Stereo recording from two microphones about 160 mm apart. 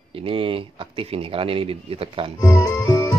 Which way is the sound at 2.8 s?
25° left (ahead or behind).